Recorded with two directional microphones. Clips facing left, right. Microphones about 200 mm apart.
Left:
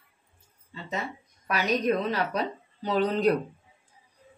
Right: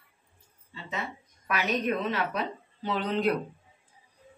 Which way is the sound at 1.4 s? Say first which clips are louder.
Left 3 dB; 40° left (ahead or behind).